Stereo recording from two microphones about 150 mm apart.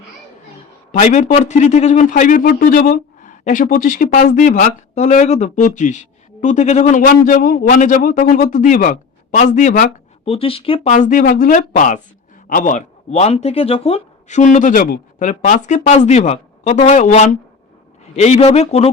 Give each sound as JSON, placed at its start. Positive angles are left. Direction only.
{"t": 0.9, "sound": "a man's voice", "side_deg": 55}
{"t": 10.2, "sound": "a man's voice", "side_deg": 40}